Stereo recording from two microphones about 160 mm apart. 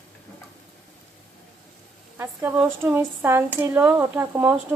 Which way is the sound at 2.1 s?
15° right (ahead or behind).